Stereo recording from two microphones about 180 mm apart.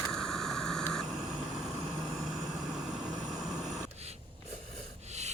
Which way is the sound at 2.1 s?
Centre (ahead or behind).